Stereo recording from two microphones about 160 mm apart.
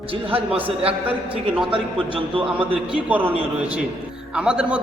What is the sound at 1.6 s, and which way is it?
Speech, 30° right (ahead or behind).